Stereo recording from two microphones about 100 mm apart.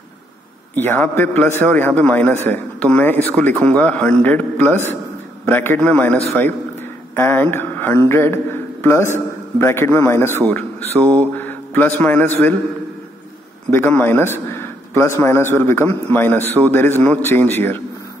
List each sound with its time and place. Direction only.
0.7 s a man's voice: 20° left (ahead or behind)
13.7 s a man's voice: 15° left (ahead or behind)